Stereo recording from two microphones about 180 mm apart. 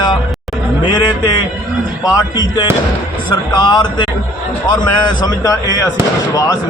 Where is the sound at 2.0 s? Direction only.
25° left (ahead or behind).